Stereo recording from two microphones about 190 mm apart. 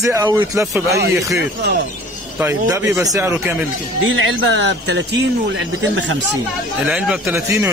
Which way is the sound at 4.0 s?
90° right.